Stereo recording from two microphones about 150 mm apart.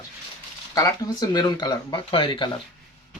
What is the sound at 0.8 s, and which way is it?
Speech, 25° left (ahead or behind).